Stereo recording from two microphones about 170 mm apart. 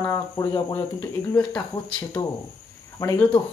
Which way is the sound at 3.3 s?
30° left (ahead or behind).